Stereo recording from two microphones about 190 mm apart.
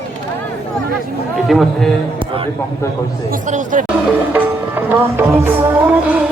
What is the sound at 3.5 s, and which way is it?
Speech, 45° right (ahead or behind).